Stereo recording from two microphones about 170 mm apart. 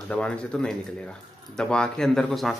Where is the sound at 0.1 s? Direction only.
5° left (ahead or behind).